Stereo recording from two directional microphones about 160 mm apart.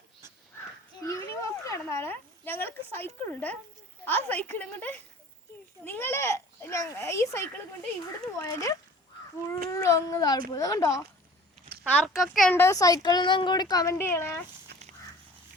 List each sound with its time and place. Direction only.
1.0 s a sound: 20° left (ahead or behind)
4.0 s a child's voice: 10° left (ahead or behind)
11.9 s a child's voice: 5° left (ahead or behind)
12.5 s a child's voice: 15° left (ahead or behind)